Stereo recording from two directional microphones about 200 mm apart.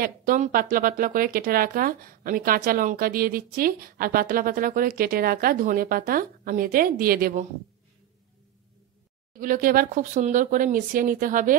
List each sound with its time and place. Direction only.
0.0 s speech: 45° right (ahead or behind)
9.4 s speech: 45° right (ahead or behind)